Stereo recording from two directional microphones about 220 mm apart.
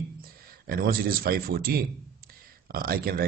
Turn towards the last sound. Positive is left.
turn(degrees=-45)  # may be behind; listen again after turning